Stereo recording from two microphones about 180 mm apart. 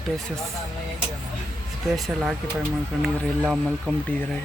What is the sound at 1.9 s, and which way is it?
Speech, centre (ahead or behind).